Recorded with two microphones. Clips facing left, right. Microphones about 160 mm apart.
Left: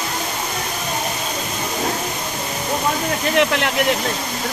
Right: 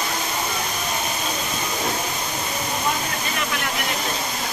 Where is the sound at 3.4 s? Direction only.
80° left.